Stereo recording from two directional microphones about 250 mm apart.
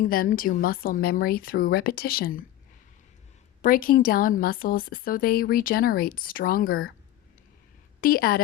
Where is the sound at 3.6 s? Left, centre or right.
Left.